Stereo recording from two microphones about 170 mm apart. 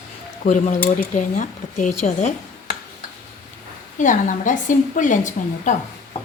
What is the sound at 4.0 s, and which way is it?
A woman's voice, 50° left (ahead or behind).